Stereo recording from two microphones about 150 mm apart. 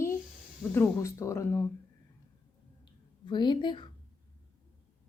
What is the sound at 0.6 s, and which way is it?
Speech, 15° left (ahead or behind).